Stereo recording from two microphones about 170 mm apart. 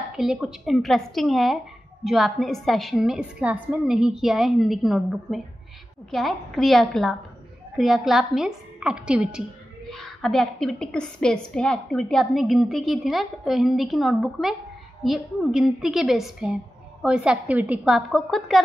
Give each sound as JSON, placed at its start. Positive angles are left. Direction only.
{"t": 0.1, "sound": "a woman's voice", "side_deg": -5}